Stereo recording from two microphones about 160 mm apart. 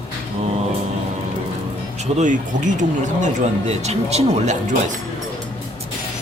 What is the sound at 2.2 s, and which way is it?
Speech, 50° right (ahead or behind).